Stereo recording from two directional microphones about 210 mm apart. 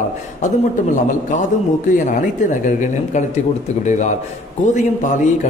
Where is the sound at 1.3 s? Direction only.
35° left (ahead or behind).